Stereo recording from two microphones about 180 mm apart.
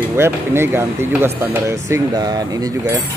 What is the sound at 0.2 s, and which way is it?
Speech, 15° right (ahead or behind).